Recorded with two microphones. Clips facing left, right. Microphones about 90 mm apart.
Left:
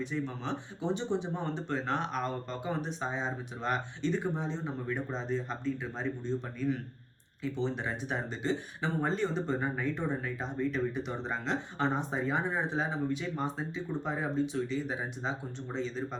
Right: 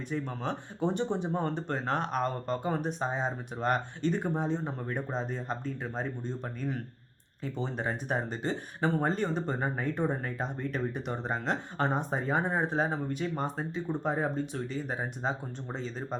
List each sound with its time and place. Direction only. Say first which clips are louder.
0.0 s speech: right 1 dB; 50° right (ahead or behind)